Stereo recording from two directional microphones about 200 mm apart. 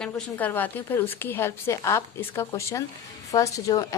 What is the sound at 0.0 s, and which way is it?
A woman's voice, 10° left (ahead or behind).